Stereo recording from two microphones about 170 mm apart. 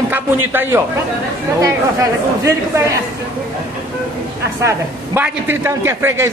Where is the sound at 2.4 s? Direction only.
20° right (ahead or behind).